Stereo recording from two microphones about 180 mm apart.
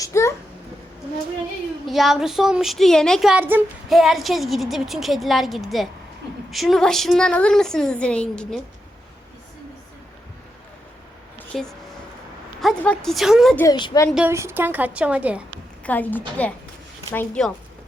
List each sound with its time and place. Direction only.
0.0 s a sound: 15° left (ahead or behind)
1.9 s speech: centre (ahead or behind)
11.5 s speech: centre (ahead or behind)
13.7 s a woman's voice: 25° left (ahead or behind)
14.2 s a woman's voice: 15° right (ahead or behind)
15.9 s a woman's voice: 10° left (ahead or behind)